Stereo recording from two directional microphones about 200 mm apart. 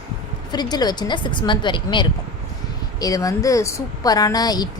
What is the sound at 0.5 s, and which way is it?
Speech, 20° left (ahead or behind).